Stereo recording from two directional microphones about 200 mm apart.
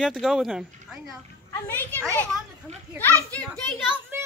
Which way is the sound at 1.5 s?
10° left (ahead or behind).